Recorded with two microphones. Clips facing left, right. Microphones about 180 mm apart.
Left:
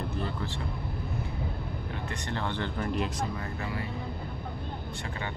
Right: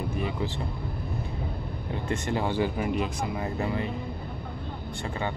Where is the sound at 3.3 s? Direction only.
25° right (ahead or behind).